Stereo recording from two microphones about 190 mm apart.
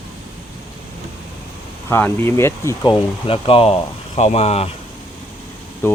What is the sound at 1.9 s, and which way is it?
Speech, 15° left (ahead or behind).